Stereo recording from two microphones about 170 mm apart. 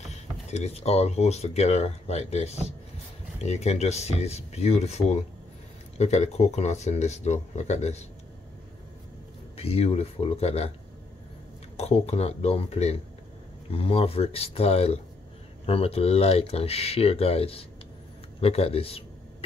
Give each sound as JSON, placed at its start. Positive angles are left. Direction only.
{"t": 0.1, "sound": "speech", "side_deg": 40}
{"t": 9.6, "sound": "speech", "side_deg": 35}
{"t": 11.7, "sound": "speech", "side_deg": 35}